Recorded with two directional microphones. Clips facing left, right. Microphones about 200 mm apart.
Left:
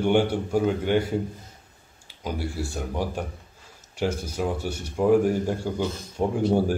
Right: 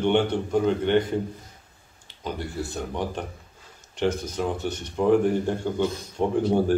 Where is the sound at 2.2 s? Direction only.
10° left (ahead or behind).